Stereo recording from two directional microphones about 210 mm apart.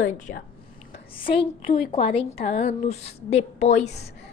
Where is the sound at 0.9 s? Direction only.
25° left (ahead or behind).